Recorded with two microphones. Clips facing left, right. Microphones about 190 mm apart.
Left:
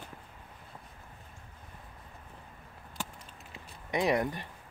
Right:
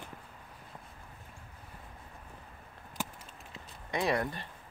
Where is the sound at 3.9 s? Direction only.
15° left (ahead or behind).